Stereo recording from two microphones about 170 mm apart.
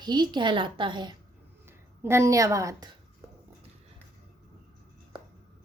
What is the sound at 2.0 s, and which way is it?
Speech, 15° right (ahead or behind).